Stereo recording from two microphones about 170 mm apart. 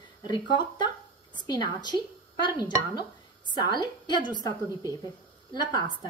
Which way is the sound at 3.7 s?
25° left (ahead or behind).